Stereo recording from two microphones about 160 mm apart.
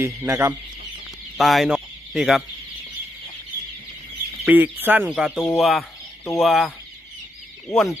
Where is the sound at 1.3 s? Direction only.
Centre (ahead or behind).